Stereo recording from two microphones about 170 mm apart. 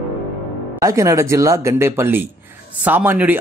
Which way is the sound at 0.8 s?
20° right (ahead or behind).